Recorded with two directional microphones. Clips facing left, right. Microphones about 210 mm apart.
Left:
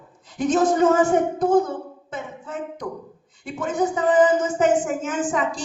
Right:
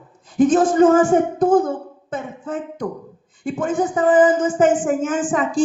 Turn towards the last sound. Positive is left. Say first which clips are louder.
# right 5 dB
turn(degrees=-50)  # may be behind; listen again after turning